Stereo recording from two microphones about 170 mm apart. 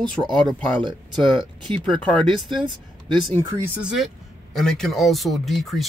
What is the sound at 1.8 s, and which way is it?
Speech, 5° left (ahead or behind).